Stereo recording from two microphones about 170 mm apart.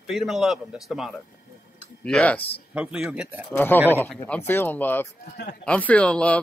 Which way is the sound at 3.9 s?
10° left (ahead or behind).